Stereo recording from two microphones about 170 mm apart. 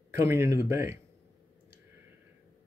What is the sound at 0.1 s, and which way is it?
Speech, 15° right (ahead or behind).